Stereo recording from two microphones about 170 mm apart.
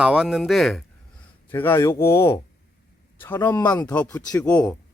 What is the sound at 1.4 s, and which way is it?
A man's voice, 10° left (ahead or behind).